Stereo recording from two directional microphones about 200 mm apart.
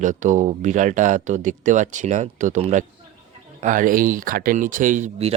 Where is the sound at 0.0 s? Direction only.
40° right (ahead or behind).